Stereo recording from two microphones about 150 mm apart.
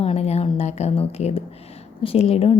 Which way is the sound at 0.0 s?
45° left (ahead or behind).